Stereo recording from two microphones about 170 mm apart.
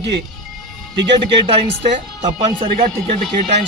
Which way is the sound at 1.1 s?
35° right (ahead or behind).